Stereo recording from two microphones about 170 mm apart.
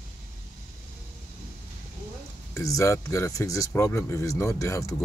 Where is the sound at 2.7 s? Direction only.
20° left (ahead or behind).